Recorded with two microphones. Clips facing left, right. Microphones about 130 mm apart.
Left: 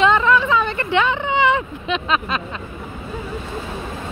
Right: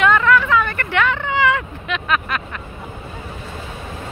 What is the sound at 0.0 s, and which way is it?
Vehicle, 20° left (ahead or behind).